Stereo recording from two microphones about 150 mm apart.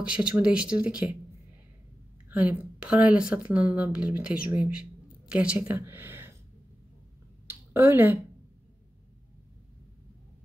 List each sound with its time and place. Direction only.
0.0 s speech: 10° right (ahead or behind)
2.2 s speech: 10° right (ahead or behind)
7.4 s a sound: 15° right (ahead or behind)